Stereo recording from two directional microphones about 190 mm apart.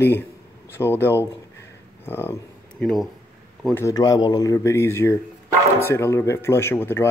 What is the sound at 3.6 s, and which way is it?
Speech, 15° left (ahead or behind).